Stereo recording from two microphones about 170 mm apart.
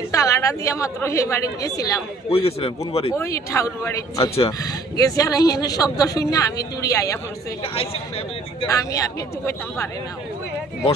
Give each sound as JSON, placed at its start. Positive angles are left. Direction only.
{"t": 0.1, "sound": "speech", "side_deg": 20}
{"t": 2.2, "sound": "a man's voice", "side_deg": 35}
{"t": 3.1, "sound": "speech", "side_deg": 15}
{"t": 7.6, "sound": "a man's voice", "side_deg": 35}
{"t": 8.6, "sound": "speech", "side_deg": 20}